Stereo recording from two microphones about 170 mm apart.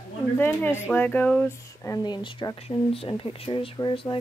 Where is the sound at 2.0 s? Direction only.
25° left (ahead or behind).